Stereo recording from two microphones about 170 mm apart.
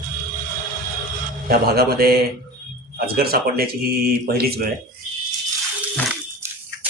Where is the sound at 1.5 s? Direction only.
65° right (ahead or behind).